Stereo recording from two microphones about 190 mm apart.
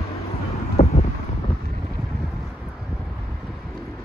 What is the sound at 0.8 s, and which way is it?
Wind noise, 40° left (ahead or behind).